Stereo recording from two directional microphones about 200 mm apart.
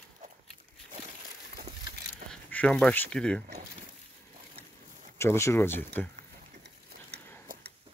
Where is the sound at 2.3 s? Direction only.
5° left (ahead or behind).